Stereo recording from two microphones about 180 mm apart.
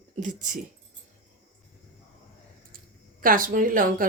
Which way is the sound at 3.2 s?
50° right (ahead or behind).